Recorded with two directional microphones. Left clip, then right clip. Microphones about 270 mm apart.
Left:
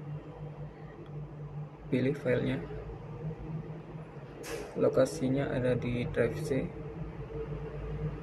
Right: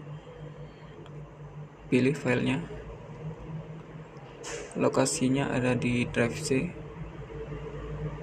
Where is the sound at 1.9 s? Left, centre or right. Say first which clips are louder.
Right 4 dB; centre.